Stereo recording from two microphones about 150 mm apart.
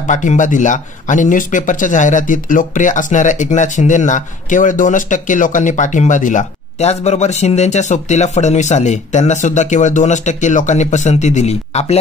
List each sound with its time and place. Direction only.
0.0 s speech: 55° left (ahead or behind)